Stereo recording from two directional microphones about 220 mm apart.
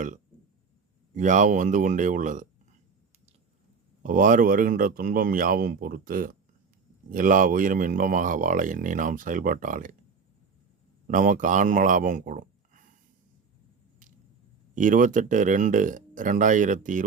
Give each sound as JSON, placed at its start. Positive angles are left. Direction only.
{"t": 1.1, "sound": "speech", "side_deg": -35}
{"t": 4.0, "sound": "speech", "side_deg": -35}
{"t": 11.1, "sound": "speech", "side_deg": -35}
{"t": 14.8, "sound": "speech", "side_deg": -35}